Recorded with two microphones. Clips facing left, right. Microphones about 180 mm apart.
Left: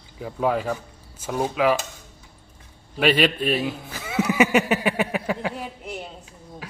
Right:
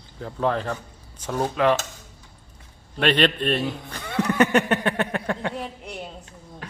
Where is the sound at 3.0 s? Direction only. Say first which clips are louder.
Left 1 dB; 5° left (ahead or behind).